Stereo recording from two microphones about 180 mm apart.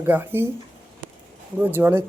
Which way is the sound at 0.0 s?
10° right (ahead or behind).